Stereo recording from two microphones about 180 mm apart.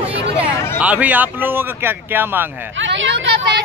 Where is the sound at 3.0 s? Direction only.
75° right (ahead or behind).